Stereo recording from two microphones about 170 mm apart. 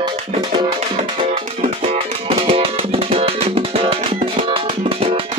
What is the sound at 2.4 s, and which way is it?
Music, 35° right (ahead or behind).